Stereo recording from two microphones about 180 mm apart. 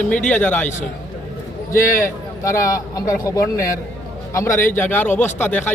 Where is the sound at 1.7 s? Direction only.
15° left (ahead or behind).